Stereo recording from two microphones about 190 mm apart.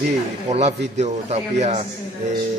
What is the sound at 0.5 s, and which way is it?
Speech, 35° right (ahead or behind).